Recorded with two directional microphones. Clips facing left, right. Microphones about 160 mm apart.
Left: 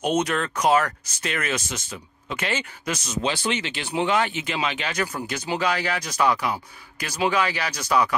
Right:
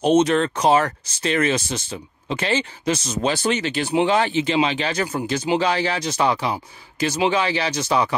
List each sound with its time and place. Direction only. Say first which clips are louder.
0.0 s speech: right 7 dB; 30° right (ahead or behind)
3.2 s speech: right 2 dB; 45° right (ahead or behind)
3.9 s speech: right 4 dB; 30° right (ahead or behind)